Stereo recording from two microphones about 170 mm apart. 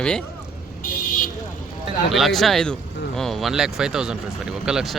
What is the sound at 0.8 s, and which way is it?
Vehicle, 55° left (ahead or behind).